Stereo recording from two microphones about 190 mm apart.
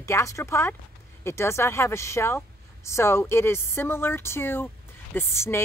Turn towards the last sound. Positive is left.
turn(degrees=15)  # may be behind; listen again after turning